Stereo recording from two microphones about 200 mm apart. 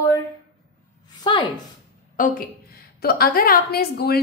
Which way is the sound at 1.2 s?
20° left (ahead or behind).